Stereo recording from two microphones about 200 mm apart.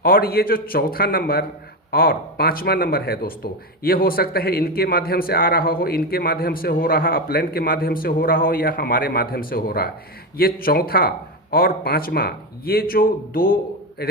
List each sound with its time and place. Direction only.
0.0 s a man's voice: 50° left (ahead or behind)